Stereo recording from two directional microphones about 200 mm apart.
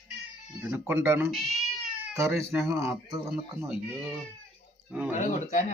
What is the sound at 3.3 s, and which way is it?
Speech, 5° right (ahead or behind).